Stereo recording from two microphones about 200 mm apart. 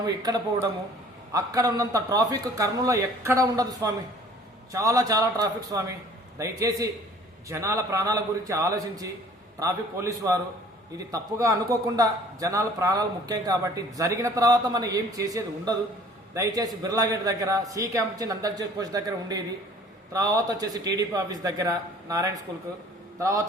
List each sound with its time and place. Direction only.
1.3 s a man's voice: 15° right (ahead or behind)